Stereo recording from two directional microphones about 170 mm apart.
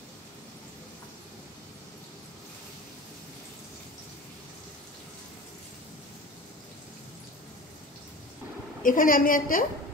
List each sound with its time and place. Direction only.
8.8 s a woman's voice: 55° left (ahead or behind)